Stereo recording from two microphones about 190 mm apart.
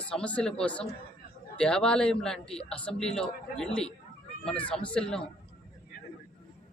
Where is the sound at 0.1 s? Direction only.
5° left (ahead or behind).